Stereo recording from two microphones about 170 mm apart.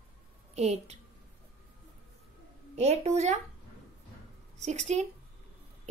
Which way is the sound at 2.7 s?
40° right (ahead or behind).